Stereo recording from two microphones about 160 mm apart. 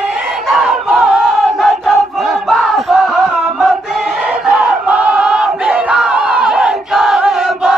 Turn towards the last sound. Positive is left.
turn(degrees=-5)  # may be behind; listen again after turning